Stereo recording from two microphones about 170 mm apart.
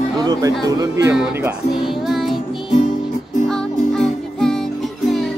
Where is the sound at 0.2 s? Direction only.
20° right (ahead or behind).